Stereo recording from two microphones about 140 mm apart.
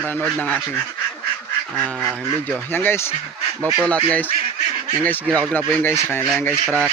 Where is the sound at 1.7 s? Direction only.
5° left (ahead or behind).